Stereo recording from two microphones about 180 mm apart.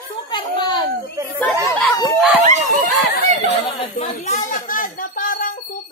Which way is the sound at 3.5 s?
35° left (ahead or behind).